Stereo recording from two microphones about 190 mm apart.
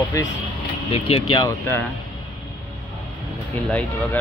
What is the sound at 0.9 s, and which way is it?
Speech, 30° left (ahead or behind).